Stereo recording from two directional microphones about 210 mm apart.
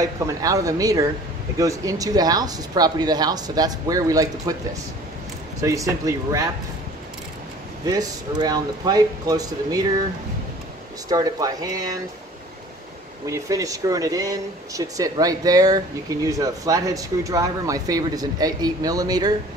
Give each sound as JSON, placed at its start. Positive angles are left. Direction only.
{"t": 0.0, "sound": "speech", "side_deg": -15}
{"t": 5.6, "sound": "speech", "side_deg": -15}
{"t": 7.8, "sound": "speech", "side_deg": -20}
{"t": 11.1, "sound": "speech", "side_deg": -20}
{"t": 13.3, "sound": "speech", "side_deg": -15}